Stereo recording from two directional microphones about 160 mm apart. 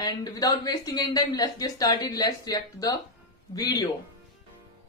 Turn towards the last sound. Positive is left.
turn(degrees=25)  # may be behind; listen again after turning